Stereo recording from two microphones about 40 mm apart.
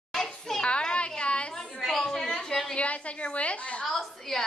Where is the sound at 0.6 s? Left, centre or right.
Left.